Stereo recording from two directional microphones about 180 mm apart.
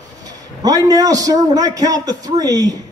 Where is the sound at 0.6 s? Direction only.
20° right (ahead or behind).